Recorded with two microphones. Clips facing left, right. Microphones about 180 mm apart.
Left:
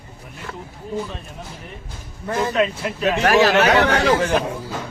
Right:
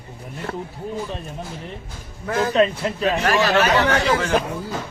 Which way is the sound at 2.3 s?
Centre (ahead or behind).